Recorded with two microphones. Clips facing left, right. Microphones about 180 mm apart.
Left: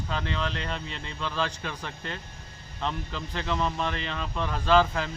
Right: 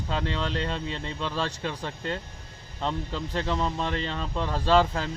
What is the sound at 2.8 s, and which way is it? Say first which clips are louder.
Speech: right 2 dB; 25° right (ahead or behind).